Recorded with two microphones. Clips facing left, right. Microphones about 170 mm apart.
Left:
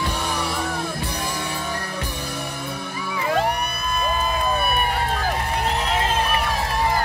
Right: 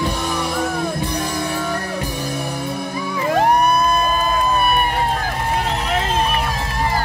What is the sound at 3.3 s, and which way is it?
Music, 50° right (ahead or behind).